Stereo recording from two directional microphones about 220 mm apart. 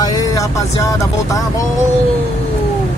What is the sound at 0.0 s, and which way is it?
Speech, 15° left (ahead or behind).